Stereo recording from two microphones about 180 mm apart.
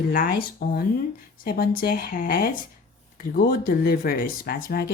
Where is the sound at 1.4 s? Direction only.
55° left (ahead or behind).